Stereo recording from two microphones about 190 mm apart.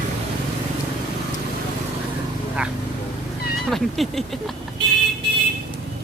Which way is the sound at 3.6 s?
Centre (ahead or behind).